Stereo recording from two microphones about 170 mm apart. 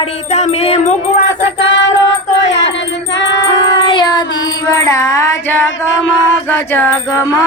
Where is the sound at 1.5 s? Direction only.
90° left.